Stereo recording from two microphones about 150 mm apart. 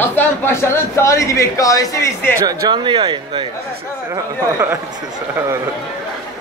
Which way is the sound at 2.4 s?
30° right (ahead or behind).